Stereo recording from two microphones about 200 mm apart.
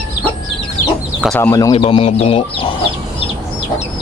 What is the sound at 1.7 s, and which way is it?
Speech, 30° left (ahead or behind).